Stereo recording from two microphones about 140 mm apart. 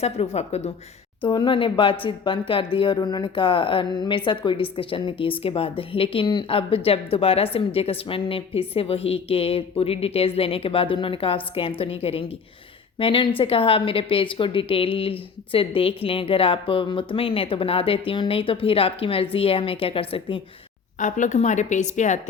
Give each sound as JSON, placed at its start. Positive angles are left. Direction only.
{"t": 0.0, "sound": "a woman's voice", "side_deg": 50}
{"t": 1.2, "sound": "a woman's voice", "side_deg": 35}
{"t": 21.0, "sound": "a woman's voice", "side_deg": 60}